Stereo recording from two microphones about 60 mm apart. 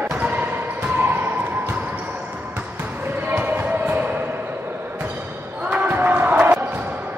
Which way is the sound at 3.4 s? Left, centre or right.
Right.